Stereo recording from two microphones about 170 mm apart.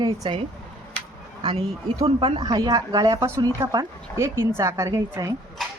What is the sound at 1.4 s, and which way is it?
A woman's voice, 35° right (ahead or behind).